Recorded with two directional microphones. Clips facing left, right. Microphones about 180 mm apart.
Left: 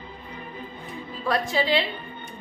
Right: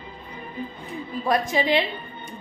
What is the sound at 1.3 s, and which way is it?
Speech, 20° right (ahead or behind).